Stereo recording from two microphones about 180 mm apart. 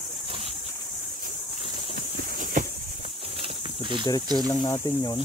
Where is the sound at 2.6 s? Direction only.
45° right (ahead or behind).